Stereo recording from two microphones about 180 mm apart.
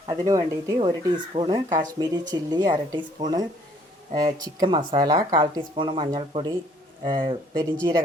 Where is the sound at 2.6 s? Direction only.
25° right (ahead or behind).